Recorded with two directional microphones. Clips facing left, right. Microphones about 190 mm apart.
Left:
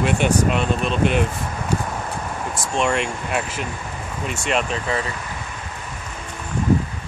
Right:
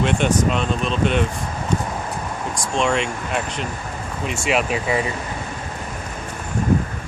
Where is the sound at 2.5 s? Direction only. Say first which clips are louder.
Right 1 dB; 5° left (ahead or behind).